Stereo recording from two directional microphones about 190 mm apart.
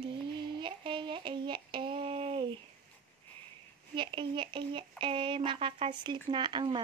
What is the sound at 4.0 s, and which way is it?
Speech, 25° right (ahead or behind).